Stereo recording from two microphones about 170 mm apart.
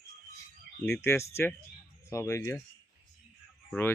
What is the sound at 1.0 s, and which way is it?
Speech, 15° left (ahead or behind).